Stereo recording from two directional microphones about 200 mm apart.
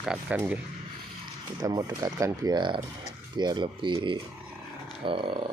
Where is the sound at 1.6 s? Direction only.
20° right (ahead or behind).